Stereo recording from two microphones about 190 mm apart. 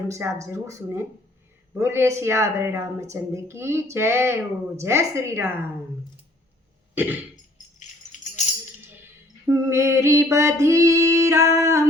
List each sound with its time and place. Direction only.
0.1 s speech: 15° right (ahead or behind)
6.9 s throat clearing: 10° right (ahead or behind)
7.8 s rattle: 40° left (ahead or behind)
9.5 s speech: 15° right (ahead or behind)